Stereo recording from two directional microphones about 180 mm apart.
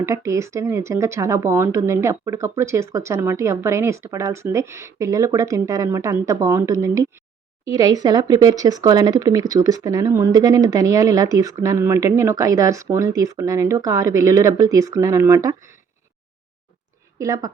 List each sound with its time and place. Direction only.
0.0 s a woman's voice: 15° right (ahead or behind)
17.2 s speech: 20° right (ahead or behind)